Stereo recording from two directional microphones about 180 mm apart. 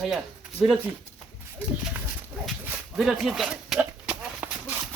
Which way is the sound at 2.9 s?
5° right (ahead or behind).